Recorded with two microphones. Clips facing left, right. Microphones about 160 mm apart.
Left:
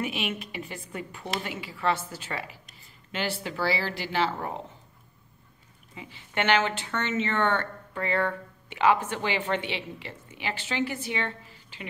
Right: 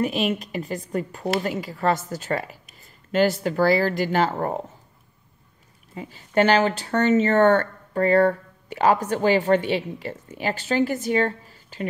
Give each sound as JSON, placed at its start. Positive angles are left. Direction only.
{"t": 0.0, "sound": "speech", "side_deg": -40}
{"t": 5.9, "sound": "speech", "side_deg": -40}